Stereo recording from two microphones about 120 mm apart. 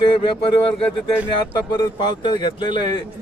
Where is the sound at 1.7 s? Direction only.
40° left (ahead or behind).